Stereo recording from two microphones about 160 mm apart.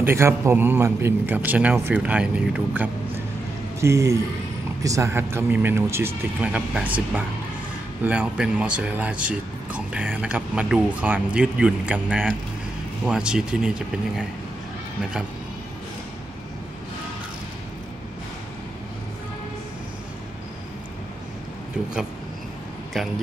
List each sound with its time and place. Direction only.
0.0 s a man's voice: 15° right (ahead or behind)
23.0 s speech: centre (ahead or behind)